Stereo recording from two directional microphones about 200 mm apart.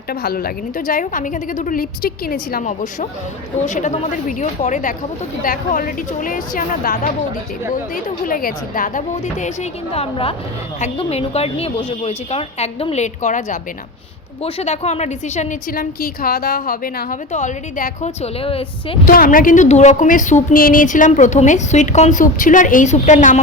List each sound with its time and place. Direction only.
0.1 s a woman's voice: 50° left (ahead or behind); by 18.9 s 30° left (ahead or behind)
19.0 s a woman's voice: 45° left (ahead or behind)